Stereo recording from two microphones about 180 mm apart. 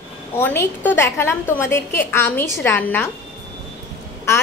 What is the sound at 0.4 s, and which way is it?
A woman's voice, 10° left (ahead or behind).